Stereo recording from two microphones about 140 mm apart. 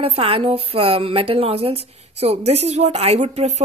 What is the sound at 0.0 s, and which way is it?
A woman's voice, 45° right (ahead or behind).